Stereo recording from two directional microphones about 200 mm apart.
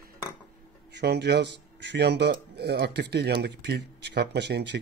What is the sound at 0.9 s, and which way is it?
Speech, 55° right (ahead or behind).